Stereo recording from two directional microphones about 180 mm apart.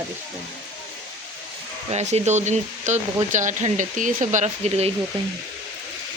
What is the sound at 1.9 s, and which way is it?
Speech, 35° right (ahead or behind).